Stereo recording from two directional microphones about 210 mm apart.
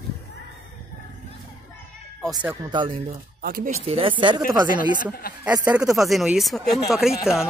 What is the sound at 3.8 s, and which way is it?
Speech, 25° right (ahead or behind).